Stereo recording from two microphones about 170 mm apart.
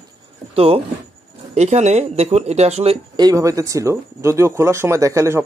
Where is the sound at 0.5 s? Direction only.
35° right (ahead or behind).